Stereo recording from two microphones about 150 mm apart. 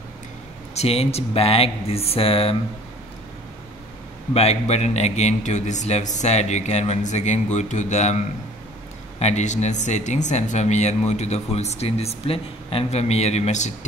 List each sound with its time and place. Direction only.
0.7 s speech: 45° left (ahead or behind)
4.3 s speech: 45° left (ahead or behind)
9.2 s speech: 50° left (ahead or behind)